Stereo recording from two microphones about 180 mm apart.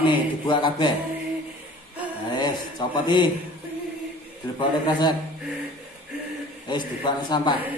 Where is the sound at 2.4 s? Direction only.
25° left (ahead or behind).